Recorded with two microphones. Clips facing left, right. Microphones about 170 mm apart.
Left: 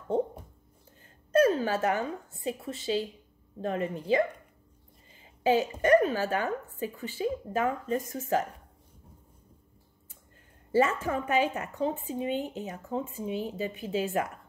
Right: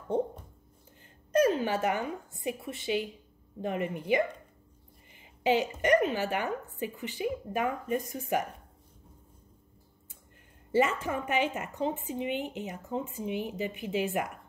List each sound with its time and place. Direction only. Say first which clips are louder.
1.3 s a woman's voice: left 2 dB; 15° right (ahead or behind)
10.7 s a woman's voice: left 1 dB; 20° right (ahead or behind)